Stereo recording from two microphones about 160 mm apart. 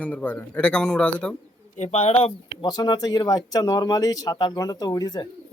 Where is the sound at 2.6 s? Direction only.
25° left (ahead or behind).